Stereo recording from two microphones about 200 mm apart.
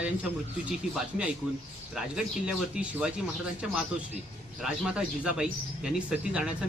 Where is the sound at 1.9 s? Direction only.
5° right (ahead or behind).